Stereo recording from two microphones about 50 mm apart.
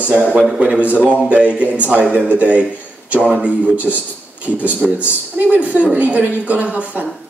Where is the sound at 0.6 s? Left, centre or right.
Right.